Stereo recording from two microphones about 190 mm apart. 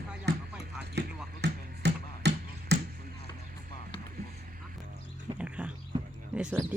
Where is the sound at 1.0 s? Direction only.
65° right (ahead or behind).